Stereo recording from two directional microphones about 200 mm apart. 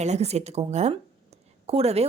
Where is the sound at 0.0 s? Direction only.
35° right (ahead or behind).